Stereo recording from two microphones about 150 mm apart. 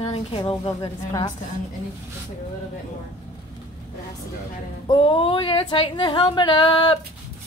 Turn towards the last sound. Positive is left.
turn(degrees=30)  # may be behind; listen again after turning